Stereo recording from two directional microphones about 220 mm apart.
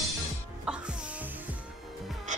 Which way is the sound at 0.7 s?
5° right (ahead or behind).